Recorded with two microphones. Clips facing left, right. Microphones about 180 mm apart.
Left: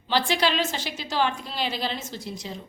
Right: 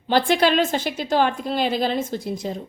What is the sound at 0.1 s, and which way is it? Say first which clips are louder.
A woman's voice: right 6 dB; 55° right (ahead or behind).